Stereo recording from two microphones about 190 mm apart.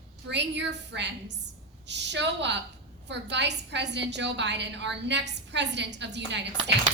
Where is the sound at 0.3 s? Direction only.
65° right (ahead or behind).